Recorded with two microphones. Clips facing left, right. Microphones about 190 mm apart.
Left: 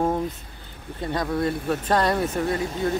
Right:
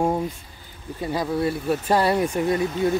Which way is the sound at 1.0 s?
5° right (ahead or behind).